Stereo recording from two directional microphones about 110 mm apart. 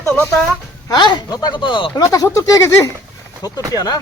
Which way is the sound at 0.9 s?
40° left (ahead or behind).